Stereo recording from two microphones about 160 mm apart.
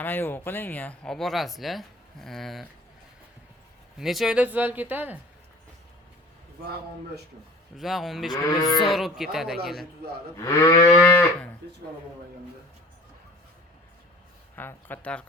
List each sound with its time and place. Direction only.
0.0 s speech: 10° left (ahead or behind)
3.9 s speech: centre (ahead or behind)
7.8 s speech: centre (ahead or behind)
8.4 s speech: 20° left (ahead or behind)
8.9 s speech: centre (ahead or behind)
10.3 s speech: 20° left (ahead or behind)
14.5 s speech: 10° left (ahead or behind)